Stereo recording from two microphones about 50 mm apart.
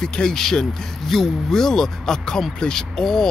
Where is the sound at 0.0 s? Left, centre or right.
Centre.